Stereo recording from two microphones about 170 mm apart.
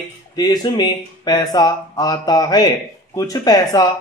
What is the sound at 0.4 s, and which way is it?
Speech, 25° left (ahead or behind).